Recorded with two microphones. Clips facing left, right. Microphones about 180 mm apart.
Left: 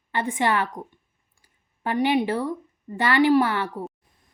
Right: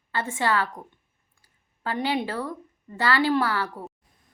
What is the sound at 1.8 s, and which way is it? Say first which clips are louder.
A woman's voice: left 5 dB; 15° left (ahead or behind).